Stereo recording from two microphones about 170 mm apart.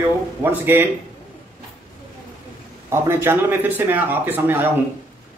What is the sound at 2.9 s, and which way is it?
Speech, 15° right (ahead or behind).